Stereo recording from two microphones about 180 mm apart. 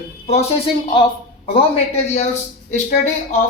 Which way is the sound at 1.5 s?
35° left (ahead or behind).